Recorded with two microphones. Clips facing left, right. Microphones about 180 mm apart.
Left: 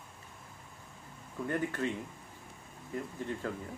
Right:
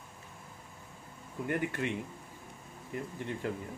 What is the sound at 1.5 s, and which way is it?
Speech, 15° right (ahead or behind).